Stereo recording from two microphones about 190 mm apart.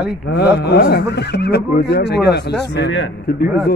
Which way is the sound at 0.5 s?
60° left (ahead or behind).